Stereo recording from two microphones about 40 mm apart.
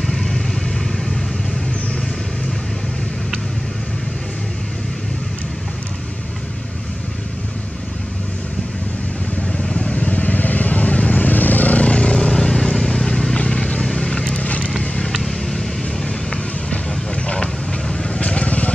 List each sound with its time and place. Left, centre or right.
0.0 s vehicle: centre
9.5 s vehicle: centre
12.2 s vehicle: centre
13.8 s vehicle: centre
14.1 s vehicle: left
14.4 s vehicle: left
14.8 s vehicle: centre
17.1 s vehicle: left